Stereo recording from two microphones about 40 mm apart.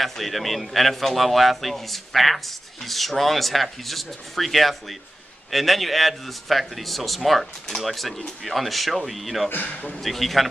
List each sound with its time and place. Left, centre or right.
0.0 s a man's voice: centre
9.5 s a man's voice: left
9.9 s a man's voice: centre